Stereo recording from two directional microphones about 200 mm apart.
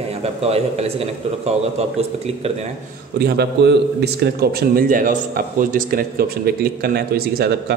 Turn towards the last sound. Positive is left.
turn(degrees=-50)  # may be behind; listen again after turning